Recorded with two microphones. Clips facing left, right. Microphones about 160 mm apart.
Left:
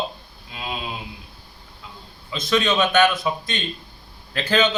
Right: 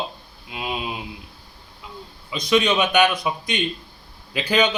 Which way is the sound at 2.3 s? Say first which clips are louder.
Right 2 dB; 15° right (ahead or behind).